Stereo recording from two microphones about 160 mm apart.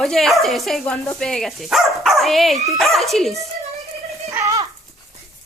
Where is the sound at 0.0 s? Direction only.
Centre (ahead or behind).